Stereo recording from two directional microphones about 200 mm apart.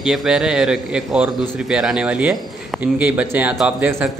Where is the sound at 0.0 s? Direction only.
Centre (ahead or behind).